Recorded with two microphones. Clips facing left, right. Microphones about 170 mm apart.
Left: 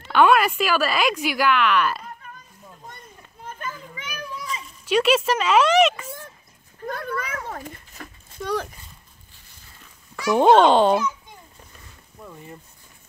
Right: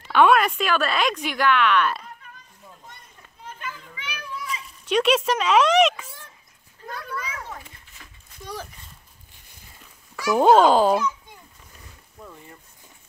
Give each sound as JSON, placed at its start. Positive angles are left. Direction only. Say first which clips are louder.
{"t": 0.0, "sound": "speech", "louder": "even", "side_deg": 0}
{"t": 3.4, "sound": "children playing", "louder": "left 3 dB", "side_deg": 45}
{"t": 4.8, "sound": "speech", "louder": "left 1 dB", "side_deg": 5}
{"t": 6.9, "sound": "a sound", "louder": "left 4 dB", "side_deg": 55}
{"t": 8.4, "sound": "speech", "louder": "left 9 dB", "side_deg": 75}
{"t": 10.3, "sound": "speech", "louder": "left 1 dB", "side_deg": -5}
{"t": 12.2, "sound": "a sound", "louder": "left 1 dB", "side_deg": 0}